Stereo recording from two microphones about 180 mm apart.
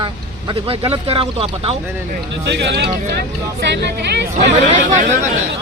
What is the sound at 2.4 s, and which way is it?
Speech, 70° right (ahead or behind).